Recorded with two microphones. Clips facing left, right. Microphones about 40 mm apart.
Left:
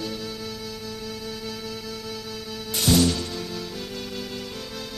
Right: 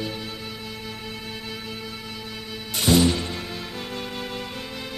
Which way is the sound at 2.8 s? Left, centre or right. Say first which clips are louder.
Right 2 dB; right.